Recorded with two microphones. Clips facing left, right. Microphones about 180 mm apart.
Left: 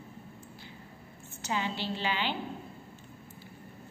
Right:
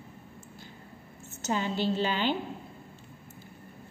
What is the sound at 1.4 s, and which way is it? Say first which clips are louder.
Speech: right 5 dB; 45° right (ahead or behind).